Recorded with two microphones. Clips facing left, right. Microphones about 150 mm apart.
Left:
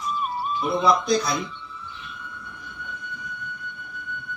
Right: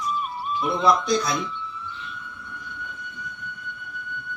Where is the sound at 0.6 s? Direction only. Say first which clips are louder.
Left 1 dB; 25° left (ahead or behind).